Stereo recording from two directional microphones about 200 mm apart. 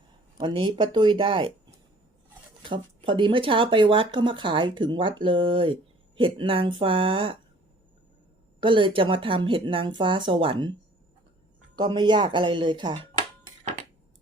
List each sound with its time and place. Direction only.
0.3 s speech: 25° right (ahead or behind)
2.6 s speech: 25° right (ahead or behind)
8.6 s speech: 25° right (ahead or behind)
11.8 s speech: 20° right (ahead or behind)